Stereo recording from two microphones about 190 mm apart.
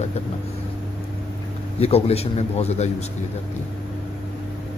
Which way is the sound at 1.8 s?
30° left (ahead or behind).